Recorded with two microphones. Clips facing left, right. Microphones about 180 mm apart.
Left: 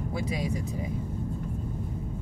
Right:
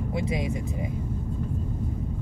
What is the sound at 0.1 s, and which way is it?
Speech, 20° right (ahead or behind).